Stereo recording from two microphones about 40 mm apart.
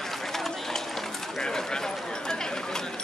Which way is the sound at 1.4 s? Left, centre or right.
Centre.